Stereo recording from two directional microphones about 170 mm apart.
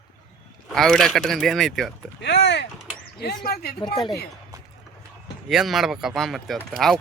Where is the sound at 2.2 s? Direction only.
90° left.